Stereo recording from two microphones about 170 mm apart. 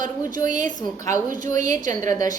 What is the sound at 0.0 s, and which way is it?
A woman's voice, 50° right (ahead or behind).